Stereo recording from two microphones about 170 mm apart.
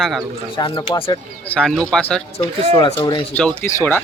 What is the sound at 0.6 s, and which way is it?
Speech, 25° left (ahead or behind).